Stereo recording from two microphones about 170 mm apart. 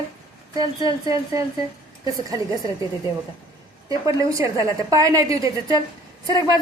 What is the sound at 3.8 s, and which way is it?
A woman's voice, 20° right (ahead or behind).